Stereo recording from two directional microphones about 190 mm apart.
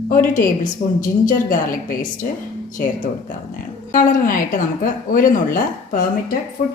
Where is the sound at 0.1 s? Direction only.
45° left (ahead or behind).